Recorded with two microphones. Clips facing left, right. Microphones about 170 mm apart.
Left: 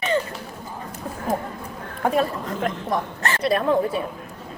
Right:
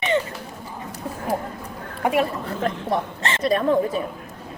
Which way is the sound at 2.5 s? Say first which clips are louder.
Right 1 dB; 30° right (ahead or behind).